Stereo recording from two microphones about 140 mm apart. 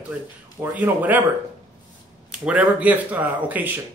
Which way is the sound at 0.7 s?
10° right (ahead or behind).